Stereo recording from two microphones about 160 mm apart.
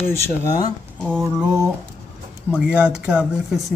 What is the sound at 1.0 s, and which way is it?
Speech, centre (ahead or behind).